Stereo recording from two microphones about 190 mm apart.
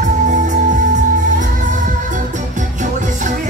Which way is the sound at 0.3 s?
40° right (ahead or behind).